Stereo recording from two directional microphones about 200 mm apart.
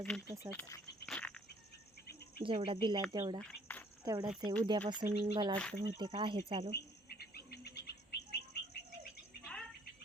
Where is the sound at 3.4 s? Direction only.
10° left (ahead or behind).